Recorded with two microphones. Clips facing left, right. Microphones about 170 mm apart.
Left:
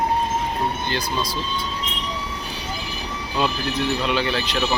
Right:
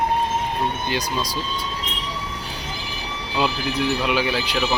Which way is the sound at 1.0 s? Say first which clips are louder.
Even; 40° right (ahead or behind).